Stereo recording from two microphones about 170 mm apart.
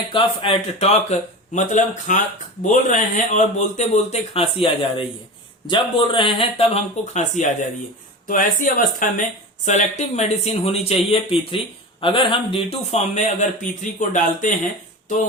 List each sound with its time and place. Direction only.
0.1 s speech: 30° left (ahead or behind); by 14.7 s 45° left (ahead or behind)